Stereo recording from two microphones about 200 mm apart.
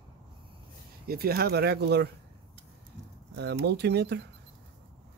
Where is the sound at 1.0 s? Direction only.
50° right (ahead or behind).